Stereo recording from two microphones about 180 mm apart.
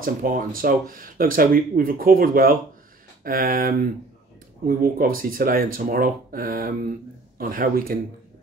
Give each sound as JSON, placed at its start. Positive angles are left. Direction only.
{"t": 0.0, "sound": "speech", "side_deg": -50}